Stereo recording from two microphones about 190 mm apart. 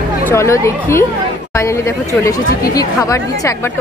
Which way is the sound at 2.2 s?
15° left (ahead or behind).